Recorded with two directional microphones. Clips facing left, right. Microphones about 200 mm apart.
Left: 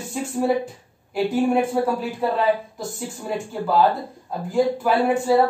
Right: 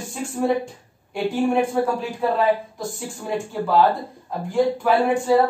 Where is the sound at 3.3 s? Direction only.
Centre (ahead or behind).